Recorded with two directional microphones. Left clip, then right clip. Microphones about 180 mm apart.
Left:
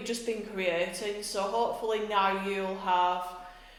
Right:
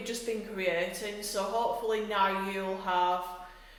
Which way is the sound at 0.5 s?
30° left (ahead or behind).